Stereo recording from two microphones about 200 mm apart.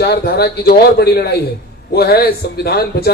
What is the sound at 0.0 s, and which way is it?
A man's voice, 55° left (ahead or behind).